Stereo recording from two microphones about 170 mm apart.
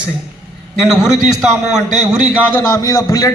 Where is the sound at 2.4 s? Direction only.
15° left (ahead or behind).